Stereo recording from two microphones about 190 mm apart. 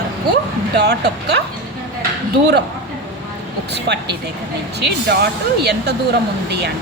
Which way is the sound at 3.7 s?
60° right (ahead or behind).